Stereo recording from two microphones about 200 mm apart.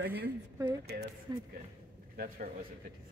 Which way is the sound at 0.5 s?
15° right (ahead or behind).